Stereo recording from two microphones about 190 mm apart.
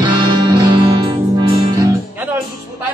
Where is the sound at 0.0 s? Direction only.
20° right (ahead or behind).